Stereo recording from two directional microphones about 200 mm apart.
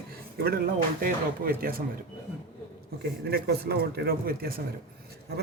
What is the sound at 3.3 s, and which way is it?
Speech, 50° right (ahead or behind).